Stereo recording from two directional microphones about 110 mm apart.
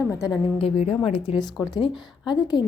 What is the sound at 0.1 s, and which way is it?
Speech, 30° left (ahead or behind).